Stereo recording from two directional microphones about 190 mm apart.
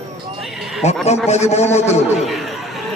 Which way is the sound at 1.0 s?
35° left (ahead or behind).